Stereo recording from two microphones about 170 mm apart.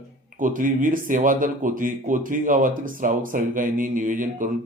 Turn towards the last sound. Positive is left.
turn(degrees=-50)  # may be behind; listen again after turning